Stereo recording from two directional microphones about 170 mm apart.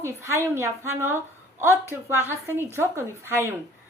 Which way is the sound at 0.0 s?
15° right (ahead or behind).